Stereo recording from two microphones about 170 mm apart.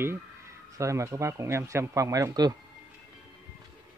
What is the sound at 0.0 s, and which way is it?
Speech, 15° right (ahead or behind).